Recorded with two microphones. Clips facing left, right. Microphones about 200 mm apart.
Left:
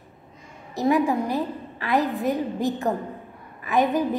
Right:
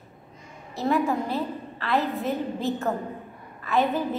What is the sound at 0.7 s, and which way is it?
A woman's voice, 15° left (ahead or behind).